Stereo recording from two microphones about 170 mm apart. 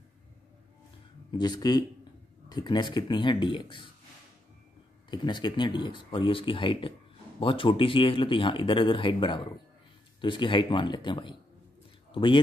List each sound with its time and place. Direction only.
1.4 s speech: 25° left (ahead or behind)
5.1 s a man's voice: 25° left (ahead or behind)